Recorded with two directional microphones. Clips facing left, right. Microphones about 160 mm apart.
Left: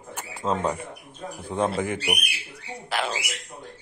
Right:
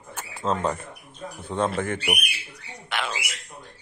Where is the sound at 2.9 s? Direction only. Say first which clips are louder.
Left 2 dB; 35° left (ahead or behind).